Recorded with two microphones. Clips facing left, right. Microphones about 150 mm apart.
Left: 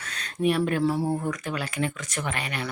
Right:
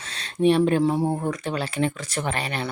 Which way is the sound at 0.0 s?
30° right (ahead or behind).